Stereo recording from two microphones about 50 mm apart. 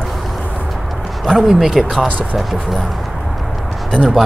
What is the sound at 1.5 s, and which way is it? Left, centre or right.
Speech, centre.